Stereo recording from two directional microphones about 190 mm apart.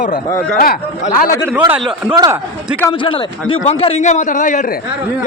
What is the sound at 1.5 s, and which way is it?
Speech, 10° right (ahead or behind).